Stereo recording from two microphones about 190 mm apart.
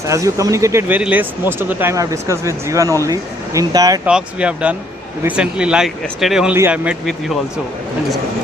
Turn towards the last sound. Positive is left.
turn(degrees=0)  # may be behind; listen again after turning